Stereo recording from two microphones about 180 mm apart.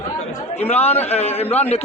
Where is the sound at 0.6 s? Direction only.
35° left (ahead or behind).